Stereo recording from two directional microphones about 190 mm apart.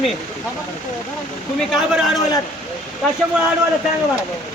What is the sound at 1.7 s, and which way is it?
Speech, centre (ahead or behind).